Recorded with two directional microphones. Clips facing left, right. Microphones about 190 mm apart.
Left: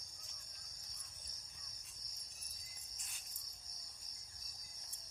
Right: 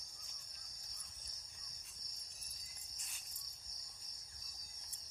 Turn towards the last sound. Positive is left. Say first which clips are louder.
# left 1 dB
turn(degrees=0)  # may be behind; listen again after turning